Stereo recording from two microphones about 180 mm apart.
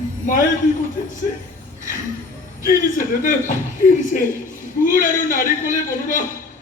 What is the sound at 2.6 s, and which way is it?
Speech, 50° left (ahead or behind).